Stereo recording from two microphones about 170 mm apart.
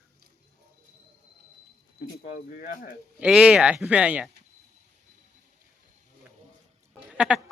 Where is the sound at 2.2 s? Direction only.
50° left (ahead or behind).